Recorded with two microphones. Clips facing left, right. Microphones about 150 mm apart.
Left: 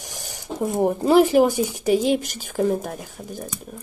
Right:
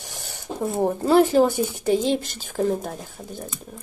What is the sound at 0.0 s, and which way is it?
Speech, 15° left (ahead or behind).